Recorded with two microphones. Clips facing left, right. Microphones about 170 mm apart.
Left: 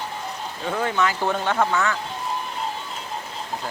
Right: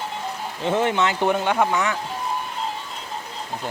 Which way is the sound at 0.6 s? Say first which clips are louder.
Right 3 dB; 25° right (ahead or behind).